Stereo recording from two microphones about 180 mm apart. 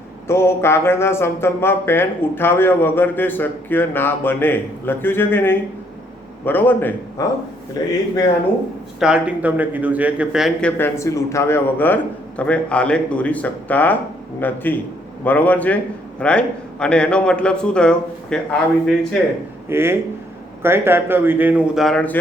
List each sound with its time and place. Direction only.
0.3 s speech: 15° left (ahead or behind)
9.0 s a man's voice: 5° right (ahead or behind)
19.7 s a man's voice: 15° right (ahead or behind); by 22.2 s 5° left (ahead or behind)